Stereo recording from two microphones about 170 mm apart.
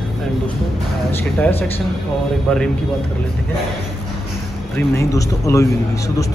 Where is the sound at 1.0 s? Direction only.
15° left (ahead or behind).